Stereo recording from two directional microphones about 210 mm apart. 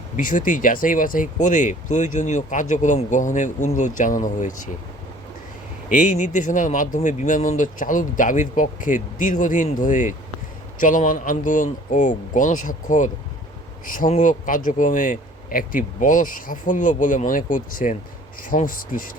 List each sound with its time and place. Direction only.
0.2 s speech: 40° left (ahead or behind)
5.9 s speech: 35° left (ahead or behind)